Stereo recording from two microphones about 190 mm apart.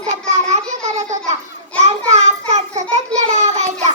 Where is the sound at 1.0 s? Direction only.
40° right (ahead or behind).